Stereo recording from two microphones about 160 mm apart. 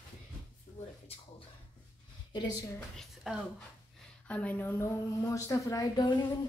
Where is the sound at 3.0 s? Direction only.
Centre (ahead or behind).